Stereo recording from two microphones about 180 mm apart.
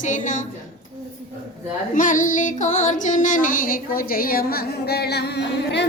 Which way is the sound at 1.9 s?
45° left (ahead or behind).